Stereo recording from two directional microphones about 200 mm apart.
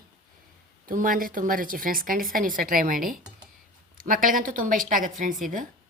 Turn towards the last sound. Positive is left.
turn(degrees=-40)  # may be behind; listen again after turning